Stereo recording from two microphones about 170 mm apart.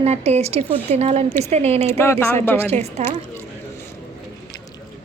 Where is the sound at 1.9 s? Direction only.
15° left (ahead or behind).